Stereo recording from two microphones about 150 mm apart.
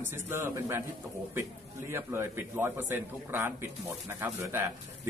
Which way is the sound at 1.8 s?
15° right (ahead or behind).